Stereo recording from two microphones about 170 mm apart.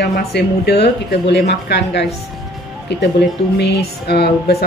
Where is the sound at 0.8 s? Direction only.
85° left.